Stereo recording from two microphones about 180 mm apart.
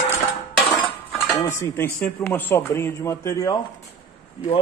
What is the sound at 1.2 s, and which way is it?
A man's voice, 15° left (ahead or behind).